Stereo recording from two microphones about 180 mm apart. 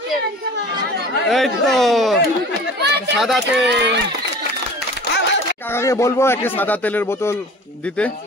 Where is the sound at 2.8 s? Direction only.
70° right (ahead or behind).